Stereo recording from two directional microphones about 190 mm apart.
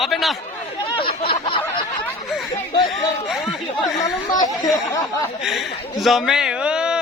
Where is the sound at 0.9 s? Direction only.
30° left (ahead or behind).